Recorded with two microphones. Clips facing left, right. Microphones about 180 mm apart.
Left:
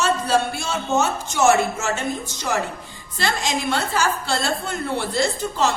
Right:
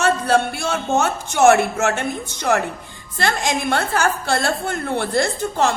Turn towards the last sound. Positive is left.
turn(degrees=-55)  # may be behind; listen again after turning